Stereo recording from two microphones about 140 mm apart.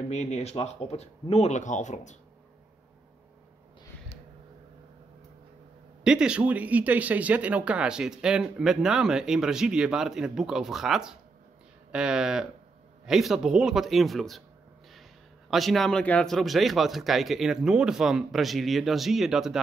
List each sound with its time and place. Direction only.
0.1 s speech: 50° left (ahead or behind)
6.0 s speech: 5° right (ahead or behind)
15.5 s speech: centre (ahead or behind)